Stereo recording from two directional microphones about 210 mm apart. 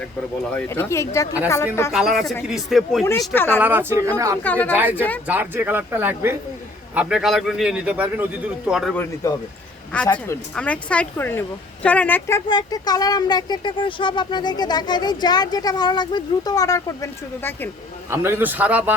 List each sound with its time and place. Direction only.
0.5 s speech: 10° left (ahead or behind)
1.9 s a man's voice: centre (ahead or behind)
3.0 s speech: 15° left (ahead or behind)
3.6 s speech: 10° right (ahead or behind)
4.4 s speech: 10° left (ahead or behind)
4.7 s speech: 10° right (ahead or behind)
4.9 s speech: 10° left (ahead or behind)
5.3 s a man's voice: 10° right (ahead or behind); by 12.4 s 10° left (ahead or behind)
12.5 s speech: 20° left (ahead or behind)
18.1 s speech: 10° right (ahead or behind)